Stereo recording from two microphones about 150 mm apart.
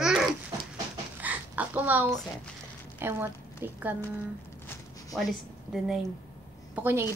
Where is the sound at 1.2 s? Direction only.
10° right (ahead or behind).